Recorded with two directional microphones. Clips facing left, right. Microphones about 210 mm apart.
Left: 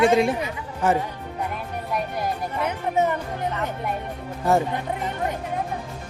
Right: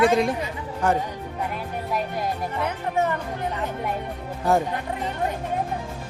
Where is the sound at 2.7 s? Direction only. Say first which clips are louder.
Left 3 dB; 20° left (ahead or behind).